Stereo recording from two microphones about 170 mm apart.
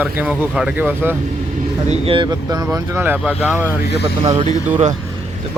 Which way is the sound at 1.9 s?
30° right (ahead or behind).